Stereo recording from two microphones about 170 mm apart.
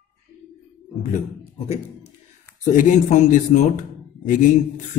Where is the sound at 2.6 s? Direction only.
50° left (ahead or behind).